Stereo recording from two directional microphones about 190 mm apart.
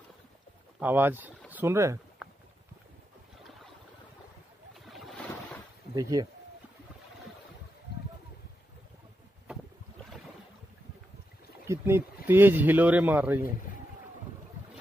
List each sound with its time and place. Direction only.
0.7 s speech: 10° right (ahead or behind)
2.2 s clip-clop: centre (ahead or behind)
4.8 s boat: centre (ahead or behind)
5.9 s speech: 20° right (ahead or behind)
9.5 s boat: 5° right (ahead or behind)
11.6 s speech: 15° right (ahead or behind)